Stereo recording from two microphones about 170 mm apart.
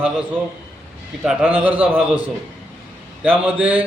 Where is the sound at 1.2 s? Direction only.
5° right (ahead or behind).